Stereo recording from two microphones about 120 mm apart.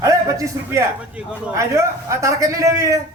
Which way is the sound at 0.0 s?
25° right (ahead or behind).